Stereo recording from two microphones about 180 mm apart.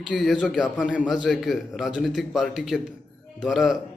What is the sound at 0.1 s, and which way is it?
A man's voice, centre (ahead or behind).